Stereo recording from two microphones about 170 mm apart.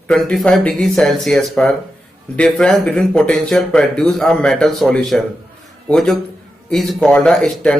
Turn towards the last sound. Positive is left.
turn(degrees=5)  # may be behind; listen again after turning